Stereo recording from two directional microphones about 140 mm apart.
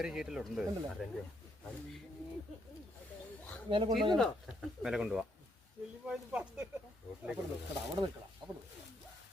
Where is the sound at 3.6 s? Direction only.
40° right (ahead or behind).